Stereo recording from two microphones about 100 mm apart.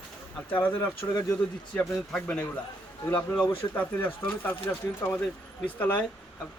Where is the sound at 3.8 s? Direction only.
20° left (ahead or behind).